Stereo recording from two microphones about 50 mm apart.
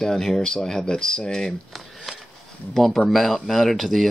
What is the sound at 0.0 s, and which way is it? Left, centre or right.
Speech, centre.